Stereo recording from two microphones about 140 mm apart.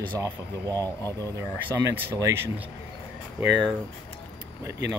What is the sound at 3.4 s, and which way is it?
Speech, 15° right (ahead or behind).